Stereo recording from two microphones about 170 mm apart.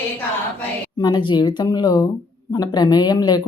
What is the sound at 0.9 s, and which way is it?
Speech, 25° left (ahead or behind).